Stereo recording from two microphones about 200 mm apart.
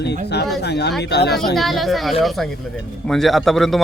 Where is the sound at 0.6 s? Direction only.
55° left (ahead or behind).